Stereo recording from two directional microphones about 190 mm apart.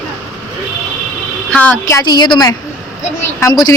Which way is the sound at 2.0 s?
25° left (ahead or behind).